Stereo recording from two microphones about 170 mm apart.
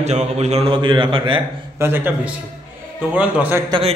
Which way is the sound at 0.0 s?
40° right (ahead or behind).